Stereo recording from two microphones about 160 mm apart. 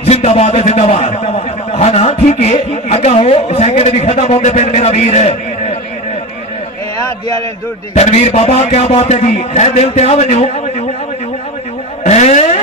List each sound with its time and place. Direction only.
0.0 s a man's voice: 40° left (ahead or behind)
7.9 s a man's voice: 40° left (ahead or behind)
12.0 s vehicle: 45° left (ahead or behind)